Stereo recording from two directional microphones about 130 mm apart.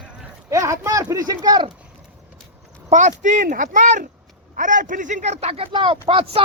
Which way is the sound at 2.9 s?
65° right (ahead or behind).